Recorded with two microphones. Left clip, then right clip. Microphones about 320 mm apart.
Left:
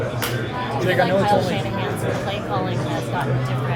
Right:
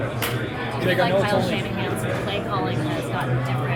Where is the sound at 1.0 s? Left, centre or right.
Left.